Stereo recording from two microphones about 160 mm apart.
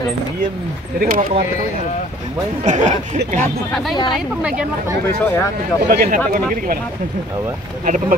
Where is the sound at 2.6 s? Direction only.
50° right (ahead or behind).